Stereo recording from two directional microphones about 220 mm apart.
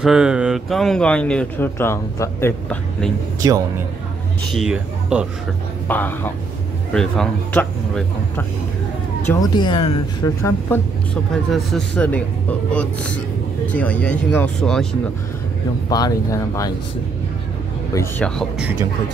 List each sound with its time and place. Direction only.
0.0 s speech: 5° right (ahead or behind)
3.4 s a man's voice: 15° right (ahead or behind)
4.6 s speech: 5° right (ahead or behind)
5.9 s speech: 10° left (ahead or behind)
9.3 s speech: 20° left (ahead or behind)
11.5 s speech: centre (ahead or behind)
15.9 s speech: 15° left (ahead or behind)
17.9 s speech: 10° left (ahead or behind)